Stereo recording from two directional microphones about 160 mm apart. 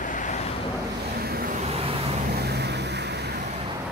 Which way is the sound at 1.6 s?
40° right (ahead or behind).